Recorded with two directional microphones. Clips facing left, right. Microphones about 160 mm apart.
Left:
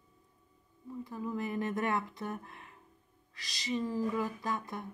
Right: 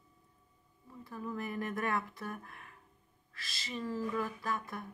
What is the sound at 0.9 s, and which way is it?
Speech, 15° left (ahead or behind).